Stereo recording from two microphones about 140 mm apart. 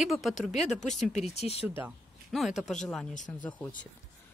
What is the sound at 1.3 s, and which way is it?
Speech, 50° left (ahead or behind).